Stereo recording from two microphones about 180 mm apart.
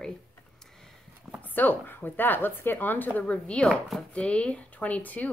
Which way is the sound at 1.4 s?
10° left (ahead or behind).